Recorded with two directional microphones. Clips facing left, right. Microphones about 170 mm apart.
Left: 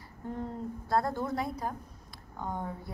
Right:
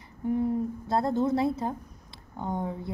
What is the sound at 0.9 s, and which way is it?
Speech, 25° right (ahead or behind).